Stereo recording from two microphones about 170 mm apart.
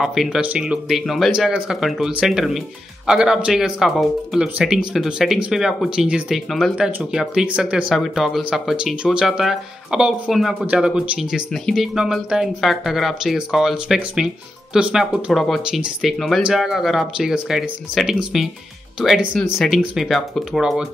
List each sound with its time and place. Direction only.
0.0 s speech: centre (ahead or behind)